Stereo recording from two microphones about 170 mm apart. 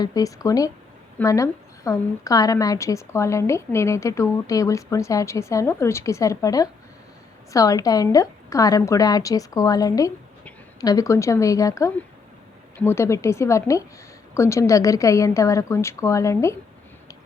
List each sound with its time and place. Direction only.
0.0 s a woman's voice: 20° left (ahead or behind)